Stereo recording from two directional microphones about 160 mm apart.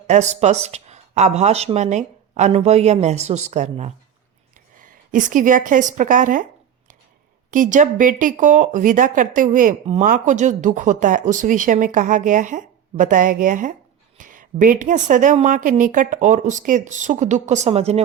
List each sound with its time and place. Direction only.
0.1 s speech: 45° right (ahead or behind)
4.5 s a woman's voice: 55° right (ahead or behind)
7.5 s speech: 55° right (ahead or behind)